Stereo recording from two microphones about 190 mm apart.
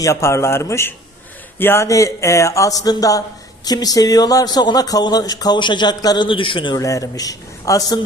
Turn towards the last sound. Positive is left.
turn(degrees=20)  # may be behind; listen again after turning